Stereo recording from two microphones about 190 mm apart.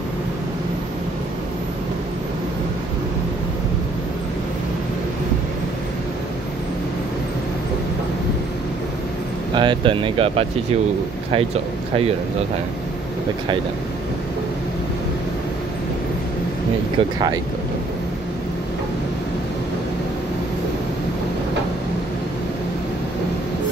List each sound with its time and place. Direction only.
9.6 s speech: 25° right (ahead or behind)